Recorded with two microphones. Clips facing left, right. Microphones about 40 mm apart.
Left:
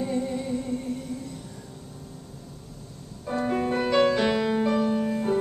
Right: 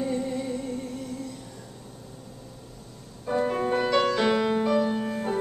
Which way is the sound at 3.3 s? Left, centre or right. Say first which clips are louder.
Right 1 dB; centre.